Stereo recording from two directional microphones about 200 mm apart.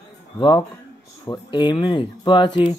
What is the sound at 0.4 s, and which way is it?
Speech, 20° left (ahead or behind).